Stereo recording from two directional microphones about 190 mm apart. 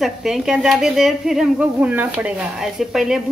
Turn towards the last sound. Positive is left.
turn(degrees=0)  # may be behind; listen again after turning